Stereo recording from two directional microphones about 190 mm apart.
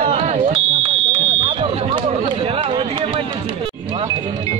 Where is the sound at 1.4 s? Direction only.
25° right (ahead or behind).